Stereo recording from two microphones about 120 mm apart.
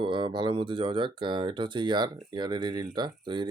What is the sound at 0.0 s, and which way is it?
Speech, 40° right (ahead or behind).